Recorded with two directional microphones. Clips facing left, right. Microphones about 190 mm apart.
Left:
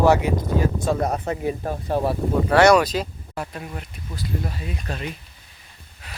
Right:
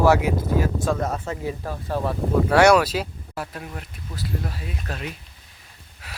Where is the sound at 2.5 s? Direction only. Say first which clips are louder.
Left 1 dB; 10° right (ahead or behind).